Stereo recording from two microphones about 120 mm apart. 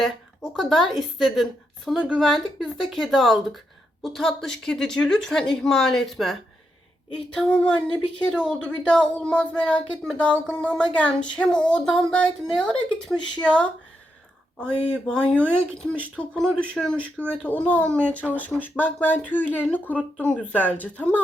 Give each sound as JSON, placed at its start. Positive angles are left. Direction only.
{"t": 0.5, "sound": "a woman's voice", "side_deg": 0}
{"t": 7.3, "sound": "speech", "side_deg": 10}
{"t": 15.0, "sound": "speech", "side_deg": 5}
{"t": 17.0, "sound": "speech", "side_deg": -15}
{"t": 17.4, "sound": "speech", "side_deg": 10}